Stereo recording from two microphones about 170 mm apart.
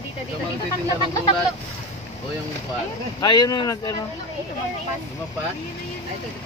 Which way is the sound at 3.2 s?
25° left (ahead or behind).